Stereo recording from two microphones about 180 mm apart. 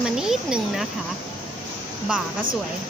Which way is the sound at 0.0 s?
5° right (ahead or behind).